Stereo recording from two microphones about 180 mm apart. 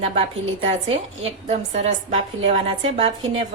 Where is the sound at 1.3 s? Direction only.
40° right (ahead or behind).